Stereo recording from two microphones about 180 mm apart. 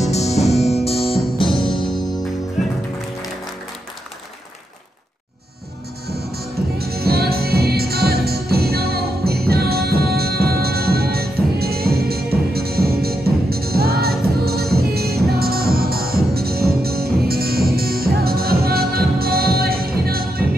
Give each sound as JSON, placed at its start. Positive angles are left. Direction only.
{"t": 0.0, "sound": "music", "side_deg": 35}
{"t": 6.0, "sound": "music", "side_deg": -60}